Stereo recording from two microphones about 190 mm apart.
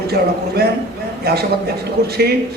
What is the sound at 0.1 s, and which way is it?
A man's voice, 55° right (ahead or behind).